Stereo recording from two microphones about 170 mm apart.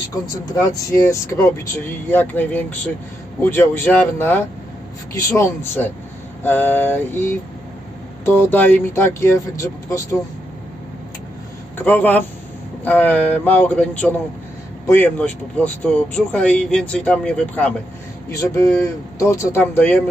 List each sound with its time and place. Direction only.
0.9 s speech: 15° left (ahead or behind)
11.9 s speech: 10° left (ahead or behind)